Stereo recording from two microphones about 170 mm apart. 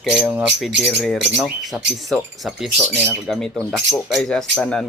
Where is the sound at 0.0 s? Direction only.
Centre (ahead or behind).